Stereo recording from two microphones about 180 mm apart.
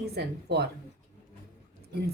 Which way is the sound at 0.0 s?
65° right (ahead or behind).